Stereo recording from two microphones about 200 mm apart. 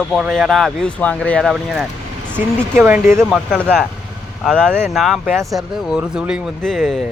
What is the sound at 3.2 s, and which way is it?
Speech, 5° left (ahead or behind).